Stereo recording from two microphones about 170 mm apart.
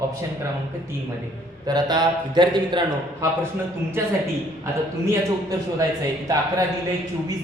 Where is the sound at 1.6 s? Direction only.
25° right (ahead or behind).